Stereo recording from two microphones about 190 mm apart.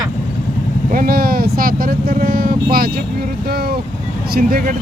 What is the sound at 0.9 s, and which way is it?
Speech, 50° right (ahead or behind).